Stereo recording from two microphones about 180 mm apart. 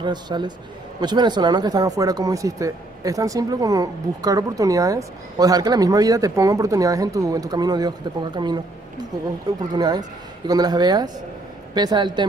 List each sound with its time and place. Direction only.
0.0 s speech: 25° right (ahead or behind)
9.8 s speech: 20° right (ahead or behind)